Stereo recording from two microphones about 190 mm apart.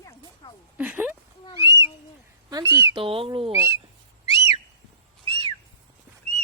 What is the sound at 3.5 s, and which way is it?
Speech, 15° right (ahead or behind).